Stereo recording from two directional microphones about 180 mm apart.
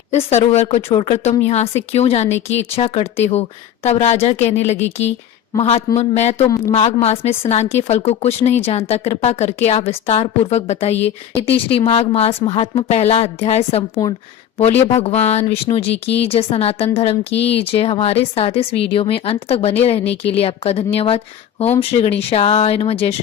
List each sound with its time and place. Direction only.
0.1 s speech: 40° left (ahead or behind)